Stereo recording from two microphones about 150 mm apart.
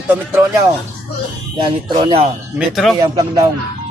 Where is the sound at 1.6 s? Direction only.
35° right (ahead or behind).